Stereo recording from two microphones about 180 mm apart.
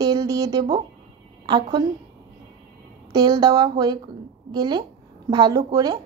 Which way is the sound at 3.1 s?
20° right (ahead or behind).